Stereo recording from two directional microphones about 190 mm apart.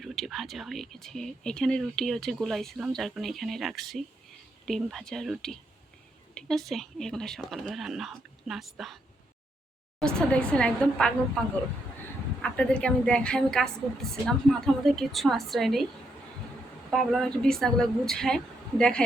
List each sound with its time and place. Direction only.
0.0 s speech: centre (ahead or behind)
10.2 s speech: 5° left (ahead or behind)
12.4 s speech: 5° left (ahead or behind)
16.9 s speech: centre (ahead or behind)